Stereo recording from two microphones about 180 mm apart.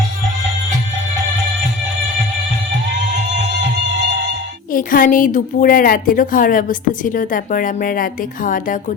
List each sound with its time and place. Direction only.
4.7 s a woman's voice: 50° left (ahead or behind)